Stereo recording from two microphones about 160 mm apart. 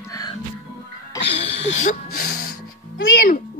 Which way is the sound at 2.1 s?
70° left (ahead or behind).